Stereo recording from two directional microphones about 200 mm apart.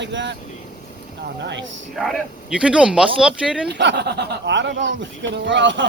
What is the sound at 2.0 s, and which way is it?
Speech, 5° right (ahead or behind).